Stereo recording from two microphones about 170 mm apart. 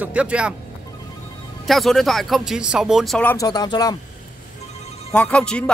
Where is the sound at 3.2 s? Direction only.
20° left (ahead or behind).